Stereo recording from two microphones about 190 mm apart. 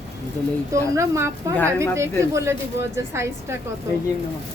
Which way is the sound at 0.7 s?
15° right (ahead or behind).